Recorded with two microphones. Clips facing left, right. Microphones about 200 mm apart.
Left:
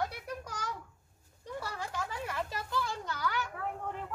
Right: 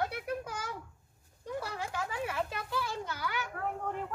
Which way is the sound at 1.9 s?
5° right (ahead or behind).